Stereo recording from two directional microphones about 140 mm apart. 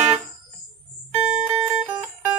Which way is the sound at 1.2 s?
5° right (ahead or behind).